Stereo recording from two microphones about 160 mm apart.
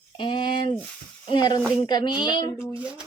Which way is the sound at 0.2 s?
30° left (ahead or behind).